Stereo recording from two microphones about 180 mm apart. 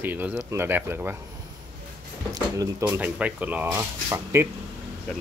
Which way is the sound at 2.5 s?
20° right (ahead or behind).